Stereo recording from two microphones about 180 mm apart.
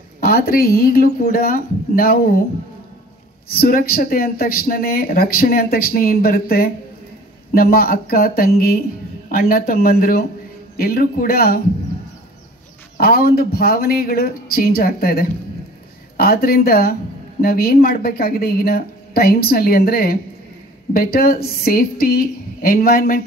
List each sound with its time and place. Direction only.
0.2 s speech: 55° left (ahead or behind)
3.4 s speech: 55° left (ahead or behind)
12.9 s speech: 55° left (ahead or behind)